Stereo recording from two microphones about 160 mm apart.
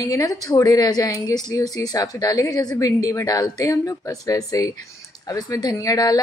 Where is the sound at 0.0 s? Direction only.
20° left (ahead or behind).